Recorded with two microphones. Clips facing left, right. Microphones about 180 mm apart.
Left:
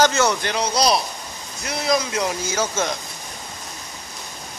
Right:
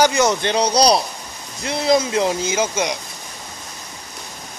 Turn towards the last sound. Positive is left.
turn(degrees=-15)  # may be behind; listen again after turning